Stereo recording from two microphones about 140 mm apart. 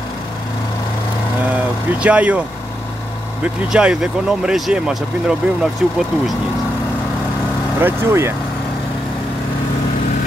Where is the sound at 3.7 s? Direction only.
5° right (ahead or behind).